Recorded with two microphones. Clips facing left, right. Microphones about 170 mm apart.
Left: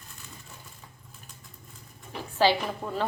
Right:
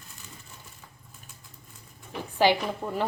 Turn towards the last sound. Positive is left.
turn(degrees=-15)  # may be behind; listen again after turning